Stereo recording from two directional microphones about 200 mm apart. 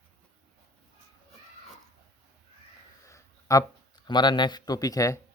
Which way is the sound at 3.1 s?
15° left (ahead or behind).